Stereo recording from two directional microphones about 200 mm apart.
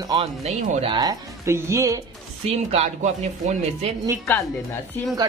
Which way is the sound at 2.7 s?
35° right (ahead or behind).